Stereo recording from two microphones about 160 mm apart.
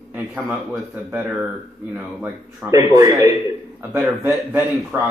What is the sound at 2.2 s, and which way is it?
A man's voice, 20° right (ahead or behind).